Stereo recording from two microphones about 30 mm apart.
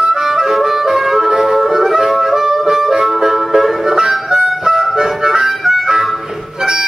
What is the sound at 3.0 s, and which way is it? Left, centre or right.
Music, centre.